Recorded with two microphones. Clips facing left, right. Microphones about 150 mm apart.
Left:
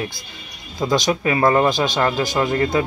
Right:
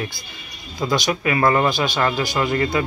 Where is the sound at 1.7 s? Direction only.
5° right (ahead or behind).